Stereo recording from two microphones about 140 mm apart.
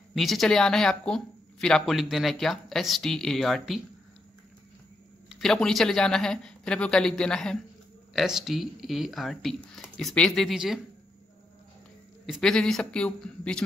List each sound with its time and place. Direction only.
0.1 s speech: centre (ahead or behind)
5.3 s speech: 5° left (ahead or behind)
12.3 s speech: 5° left (ahead or behind)